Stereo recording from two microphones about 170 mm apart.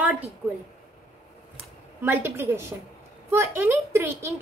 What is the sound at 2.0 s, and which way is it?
A woman's voice, 15° right (ahead or behind).